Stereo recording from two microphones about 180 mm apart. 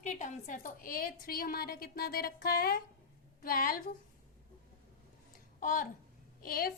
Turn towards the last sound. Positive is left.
turn(degrees=55)  # may be behind; listen again after turning